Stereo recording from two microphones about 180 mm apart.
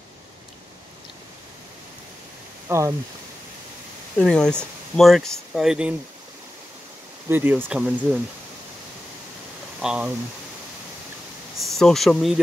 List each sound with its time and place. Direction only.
2.7 s speech: 15° right (ahead or behind)
4.2 s speech: 5° left (ahead or behind)
7.2 s speech: 10° right (ahead or behind)
9.8 s speech: 5° right (ahead or behind)
11.6 s speech: centre (ahead or behind)